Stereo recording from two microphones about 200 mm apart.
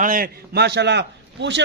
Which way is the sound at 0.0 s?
45° right (ahead or behind).